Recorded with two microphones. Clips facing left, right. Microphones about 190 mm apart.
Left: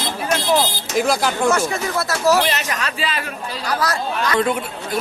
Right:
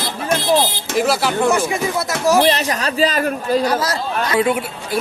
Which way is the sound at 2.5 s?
35° right (ahead or behind).